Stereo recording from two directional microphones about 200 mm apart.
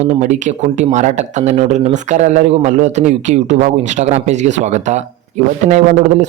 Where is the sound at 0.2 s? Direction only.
35° right (ahead or behind).